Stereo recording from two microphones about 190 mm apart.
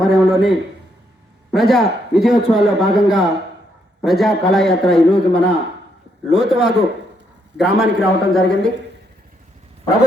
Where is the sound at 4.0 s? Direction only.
Centre (ahead or behind).